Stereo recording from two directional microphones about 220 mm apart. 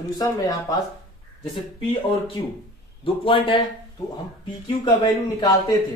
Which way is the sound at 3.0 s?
25° left (ahead or behind).